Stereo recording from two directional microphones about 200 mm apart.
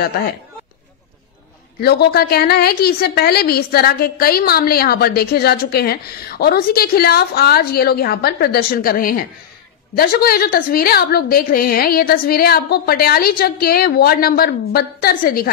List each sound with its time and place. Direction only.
1.8 s a woman's voice: 55° left (ahead or behind)